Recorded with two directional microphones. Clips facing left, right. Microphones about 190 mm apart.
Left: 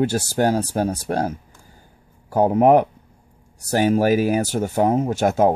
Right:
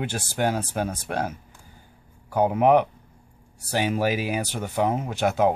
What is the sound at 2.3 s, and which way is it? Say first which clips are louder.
Speech: left 4 dB; 40° left (ahead or behind).